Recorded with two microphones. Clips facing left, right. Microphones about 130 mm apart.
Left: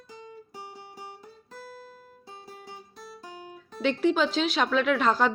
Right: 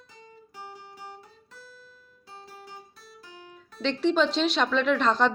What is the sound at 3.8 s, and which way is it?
Speech, 5° left (ahead or behind).